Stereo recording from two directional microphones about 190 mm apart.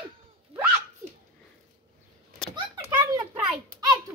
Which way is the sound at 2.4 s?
5° left (ahead or behind).